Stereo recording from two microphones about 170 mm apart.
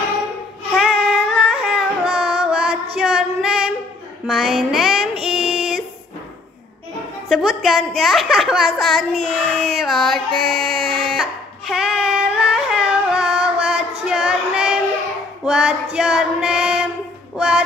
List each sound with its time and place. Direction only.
0.7 s music: centre (ahead or behind)
3.0 s female singing: 5° right (ahead or behind)
7.2 s a sound: centre (ahead or behind)
15.4 s female singing: 5° right (ahead or behind)